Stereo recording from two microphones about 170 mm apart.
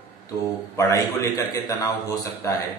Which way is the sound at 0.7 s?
20° left (ahead or behind).